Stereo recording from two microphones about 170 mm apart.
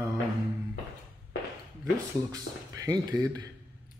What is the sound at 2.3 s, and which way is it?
Speech, 20° right (ahead or behind).